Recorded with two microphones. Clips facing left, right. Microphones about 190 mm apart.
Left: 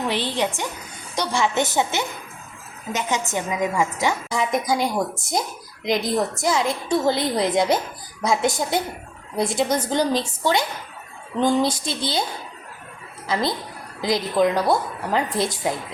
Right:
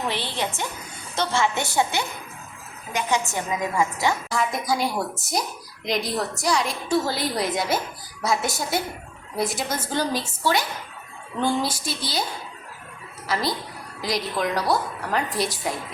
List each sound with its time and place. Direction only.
0.1 s a woman's voice: 15° left (ahead or behind)
14.0 s a woman's voice: 25° left (ahead or behind)